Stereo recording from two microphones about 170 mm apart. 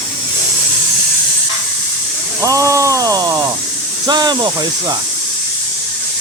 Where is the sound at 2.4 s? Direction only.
20° right (ahead or behind).